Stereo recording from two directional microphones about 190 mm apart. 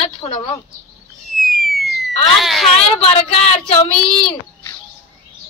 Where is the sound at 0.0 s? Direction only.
30° left (ahead or behind).